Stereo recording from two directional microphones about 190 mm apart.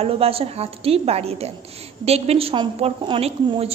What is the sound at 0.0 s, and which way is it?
A man's voice, 30° right (ahead or behind).